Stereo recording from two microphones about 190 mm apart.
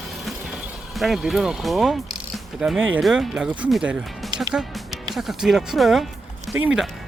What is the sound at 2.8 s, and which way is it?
Speech, 90° right.